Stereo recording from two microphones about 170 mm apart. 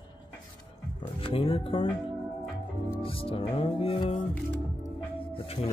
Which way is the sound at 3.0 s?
35° left (ahead or behind).